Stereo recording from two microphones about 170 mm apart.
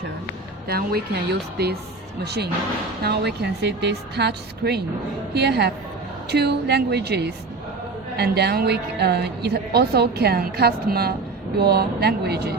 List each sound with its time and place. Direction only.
0.7 s a woman's voice: 65° right (ahead or behind)